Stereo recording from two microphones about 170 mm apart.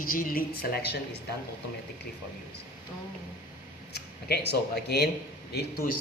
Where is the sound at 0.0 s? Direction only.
55° left (ahead or behind).